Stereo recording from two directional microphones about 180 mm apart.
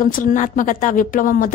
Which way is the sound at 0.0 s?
50° left (ahead or behind).